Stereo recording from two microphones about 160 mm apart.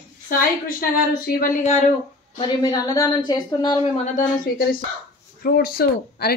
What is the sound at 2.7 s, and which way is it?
A woman's voice, 20° left (ahead or behind).